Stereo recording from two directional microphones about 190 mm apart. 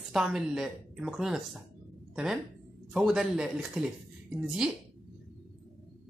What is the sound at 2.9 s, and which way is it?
A woman's voice, centre (ahead or behind).